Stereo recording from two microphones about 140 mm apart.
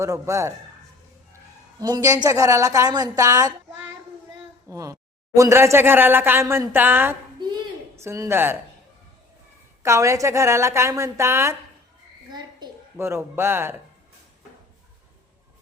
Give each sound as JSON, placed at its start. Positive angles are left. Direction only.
{"t": 0.0, "sound": "a woman's voice", "side_deg": -20}
{"t": 1.8, "sound": "a woman's voice", "side_deg": -25}
{"t": 4.7, "sound": "a woman's voice", "side_deg": -25}
{"t": 9.8, "sound": "a woman's voice", "side_deg": -20}
{"t": 13.0, "sound": "speech", "side_deg": -20}